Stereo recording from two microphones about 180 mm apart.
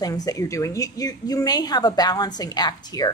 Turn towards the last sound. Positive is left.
turn(degrees=20)  # may be behind; listen again after turning